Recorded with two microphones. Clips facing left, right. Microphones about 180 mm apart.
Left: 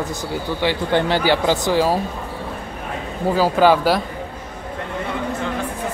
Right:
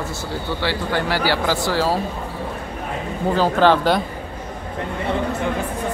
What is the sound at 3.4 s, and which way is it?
Speech, 10° left (ahead or behind).